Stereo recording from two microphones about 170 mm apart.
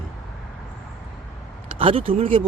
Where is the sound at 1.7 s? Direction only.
35° right (ahead or behind).